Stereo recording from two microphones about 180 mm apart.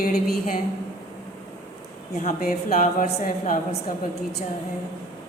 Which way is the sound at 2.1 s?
40° left (ahead or behind).